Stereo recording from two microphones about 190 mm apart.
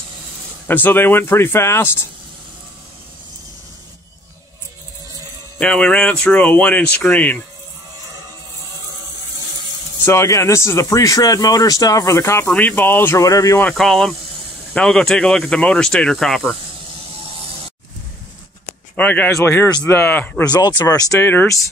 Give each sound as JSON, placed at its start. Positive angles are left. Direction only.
{"t": 0.7, "sound": "speech", "side_deg": 10}
{"t": 5.6, "sound": "speech", "side_deg": 5}
{"t": 10.0, "sound": "speech", "side_deg": 15}
{"t": 13.7, "sound": "speech", "side_deg": 5}
{"t": 18.9, "sound": "speech", "side_deg": 10}
{"t": 20.4, "sound": "speech", "side_deg": 20}